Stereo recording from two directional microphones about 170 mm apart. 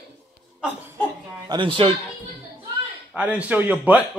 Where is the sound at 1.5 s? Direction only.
30° right (ahead or behind).